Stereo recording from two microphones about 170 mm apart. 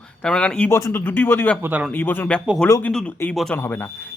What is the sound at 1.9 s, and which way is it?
Speech, 10° left (ahead or behind).